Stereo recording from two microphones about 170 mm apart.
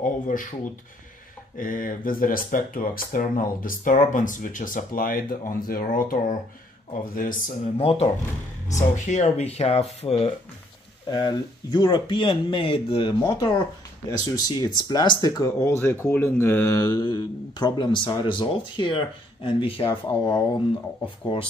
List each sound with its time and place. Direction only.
0.0 s speech: 50° left (ahead or behind)
1.6 s speech: 55° left (ahead or behind)
7.4 s speech: 35° left (ahead or behind)
11.1 s speech: 25° left (ahead or behind)